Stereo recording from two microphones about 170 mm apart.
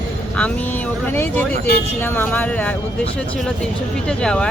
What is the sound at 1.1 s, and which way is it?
Speech, 15° left (ahead or behind).